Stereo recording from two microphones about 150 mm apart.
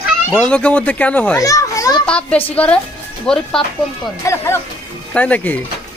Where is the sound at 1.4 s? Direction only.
20° left (ahead or behind).